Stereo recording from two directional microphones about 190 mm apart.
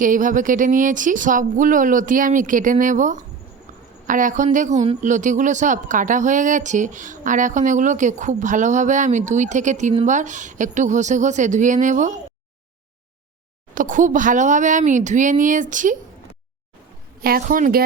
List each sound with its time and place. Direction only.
0.0 s speech: 45° right (ahead or behind)
13.7 s speech: 45° right (ahead or behind)
17.2 s speech: 50° right (ahead or behind)